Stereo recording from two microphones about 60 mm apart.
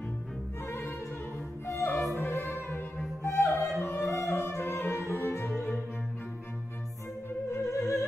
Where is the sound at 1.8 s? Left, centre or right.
Centre.